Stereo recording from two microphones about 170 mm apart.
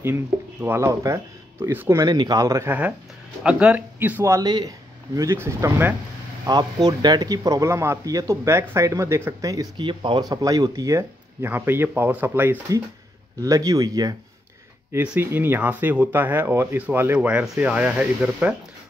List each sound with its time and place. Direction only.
0.0 s speech: 10° right (ahead or behind)